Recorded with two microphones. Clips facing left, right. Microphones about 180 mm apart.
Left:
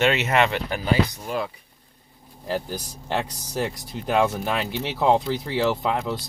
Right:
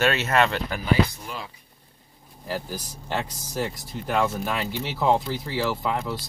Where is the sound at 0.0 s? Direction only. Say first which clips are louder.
Left 1 dB; 15° left (ahead or behind).